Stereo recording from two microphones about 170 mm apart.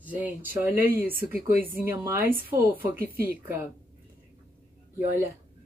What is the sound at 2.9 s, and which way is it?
Speech, 60° right (ahead or behind).